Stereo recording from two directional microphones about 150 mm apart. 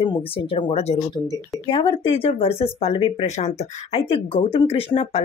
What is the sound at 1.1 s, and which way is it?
Speech, 35° left (ahead or behind).